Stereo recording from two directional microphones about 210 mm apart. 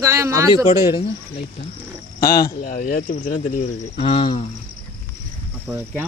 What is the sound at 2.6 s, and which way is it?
Speech, 45° left (ahead or behind).